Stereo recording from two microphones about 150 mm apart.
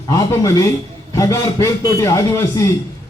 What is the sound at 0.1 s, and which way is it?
Speech, 25° left (ahead or behind).